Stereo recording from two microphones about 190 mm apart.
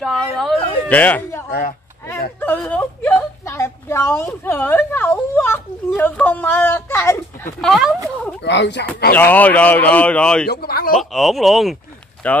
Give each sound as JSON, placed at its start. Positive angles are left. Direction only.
{"t": 0.0, "sound": "speech", "side_deg": 0}
{"t": 1.5, "sound": "speech", "side_deg": 50}
{"t": 2.4, "sound": "a sound", "side_deg": 10}
{"t": 7.6, "sound": "speech", "side_deg": 0}
{"t": 8.4, "sound": "speech", "side_deg": 65}
{"t": 9.1, "sound": "speech", "side_deg": 10}
{"t": 10.5, "sound": "speech", "side_deg": 55}
{"t": 11.0, "sound": "speech", "side_deg": 0}